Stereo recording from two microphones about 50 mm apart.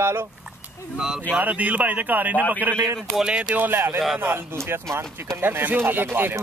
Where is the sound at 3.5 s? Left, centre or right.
Right.